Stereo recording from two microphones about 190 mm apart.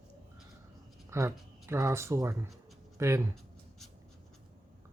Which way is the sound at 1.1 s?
15° right (ahead or behind).